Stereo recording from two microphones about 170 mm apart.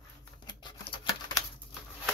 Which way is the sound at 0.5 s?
25° left (ahead or behind).